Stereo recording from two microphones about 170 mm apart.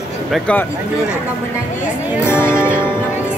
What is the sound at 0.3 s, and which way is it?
Speech, 5° left (ahead or behind).